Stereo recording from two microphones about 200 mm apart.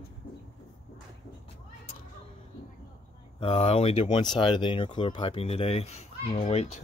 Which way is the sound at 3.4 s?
30° left (ahead or behind).